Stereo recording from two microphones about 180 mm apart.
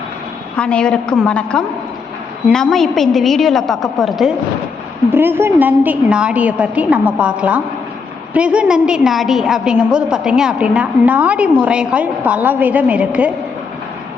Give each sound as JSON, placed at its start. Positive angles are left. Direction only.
{"t": 0.5, "sound": "a woman's voice", "side_deg": 5}
{"t": 5.1, "sound": "a woman's voice", "side_deg": -10}